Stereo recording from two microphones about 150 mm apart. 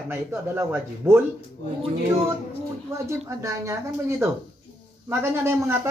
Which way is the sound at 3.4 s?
20° right (ahead or behind).